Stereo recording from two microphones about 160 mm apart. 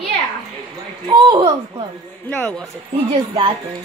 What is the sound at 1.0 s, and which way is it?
Speech, 30° right (ahead or behind).